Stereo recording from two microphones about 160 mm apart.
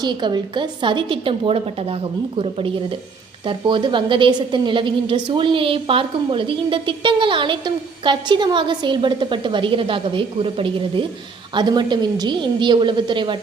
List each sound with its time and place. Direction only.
0.0 s a woman's voice: 30° right (ahead or behind)